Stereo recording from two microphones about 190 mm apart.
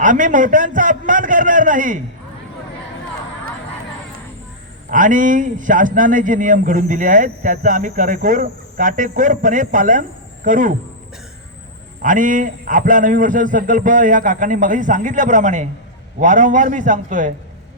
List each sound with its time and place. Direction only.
0.0 s a man's voice: 45° right (ahead or behind)
4.9 s speech: 45° right (ahead or behind)
12.0 s a man's voice: 45° right (ahead or behind)